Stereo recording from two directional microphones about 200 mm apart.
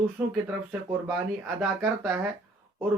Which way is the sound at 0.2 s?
5° right (ahead or behind).